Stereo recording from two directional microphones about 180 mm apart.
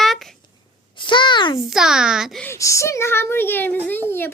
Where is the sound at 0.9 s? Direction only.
25° left (ahead or behind).